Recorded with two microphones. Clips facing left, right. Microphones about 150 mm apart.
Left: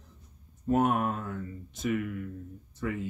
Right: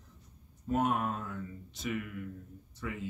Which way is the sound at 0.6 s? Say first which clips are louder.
Left 5 dB; 50° left (ahead or behind).